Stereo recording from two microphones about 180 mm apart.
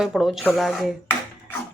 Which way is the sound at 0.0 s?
Centre (ahead or behind).